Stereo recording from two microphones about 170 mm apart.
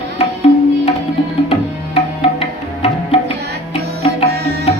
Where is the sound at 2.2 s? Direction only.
35° left (ahead or behind).